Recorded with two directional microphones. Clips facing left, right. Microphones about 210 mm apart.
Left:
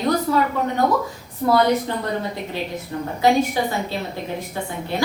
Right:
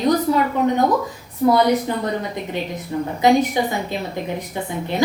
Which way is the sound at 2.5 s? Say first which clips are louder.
Right 2 dB; 20° right (ahead or behind).